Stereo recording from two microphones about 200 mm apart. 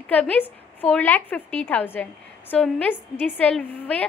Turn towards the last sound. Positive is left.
turn(degrees=5)  # may be behind; listen again after turning